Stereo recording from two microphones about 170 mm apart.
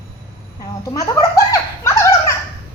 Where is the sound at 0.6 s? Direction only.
20° left (ahead or behind).